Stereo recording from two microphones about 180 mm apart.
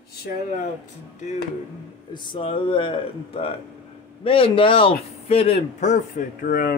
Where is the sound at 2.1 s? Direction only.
25° left (ahead or behind).